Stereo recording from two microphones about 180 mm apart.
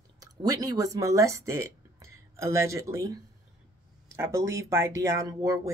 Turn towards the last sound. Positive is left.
turn(degrees=-15)  # may be behind; listen again after turning